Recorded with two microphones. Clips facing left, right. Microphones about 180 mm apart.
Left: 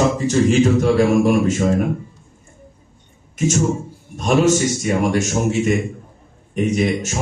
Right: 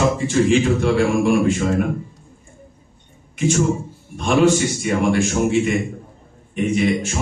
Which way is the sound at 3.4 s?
45° left (ahead or behind).